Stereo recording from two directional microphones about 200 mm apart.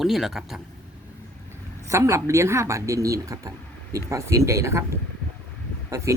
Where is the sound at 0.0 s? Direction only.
Centre (ahead or behind).